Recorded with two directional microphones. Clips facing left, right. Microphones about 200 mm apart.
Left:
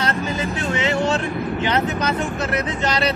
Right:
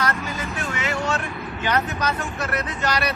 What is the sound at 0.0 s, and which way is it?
Speech, 25° left (ahead or behind).